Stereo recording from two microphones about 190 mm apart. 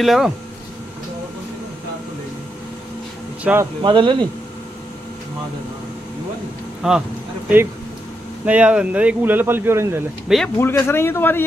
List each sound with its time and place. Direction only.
0.0 s speech: centre (ahead or behind)
3.4 s speech: 5° right (ahead or behind)
3.8 s speech: 25° right (ahead or behind)
6.8 s speech: 5° right (ahead or behind)
8.5 s speech: 5° right (ahead or behind)
10.6 s a man's voice: 10° left (ahead or behind)